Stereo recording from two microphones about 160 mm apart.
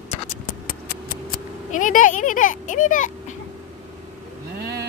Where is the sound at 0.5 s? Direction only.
65° left (ahead or behind).